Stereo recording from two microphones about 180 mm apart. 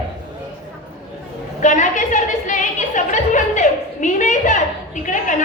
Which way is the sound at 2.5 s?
45° left (ahead or behind).